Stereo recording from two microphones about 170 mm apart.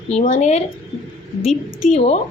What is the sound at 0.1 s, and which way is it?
Speech, 45° left (ahead or behind).